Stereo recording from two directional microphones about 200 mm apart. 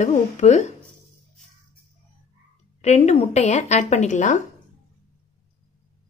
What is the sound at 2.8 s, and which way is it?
Speech, 35° left (ahead or behind).